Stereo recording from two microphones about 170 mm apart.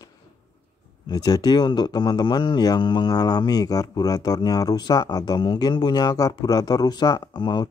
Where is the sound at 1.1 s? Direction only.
25° left (ahead or behind).